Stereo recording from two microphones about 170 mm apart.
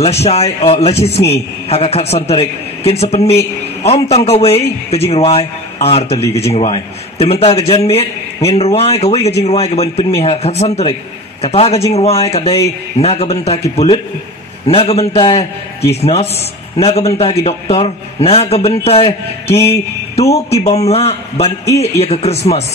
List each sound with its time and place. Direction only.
0.0 s a man's voice: 40° left (ahead or behind)
14.7 s a man's voice: 35° left (ahead or behind)